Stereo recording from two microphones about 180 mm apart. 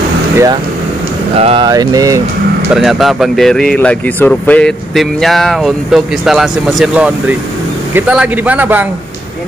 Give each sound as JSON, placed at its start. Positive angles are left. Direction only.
{"t": 1.3, "sound": "speech", "side_deg": -30}
{"t": 1.7, "sound": "speech", "side_deg": -20}
{"t": 2.7, "sound": "speech", "side_deg": 0}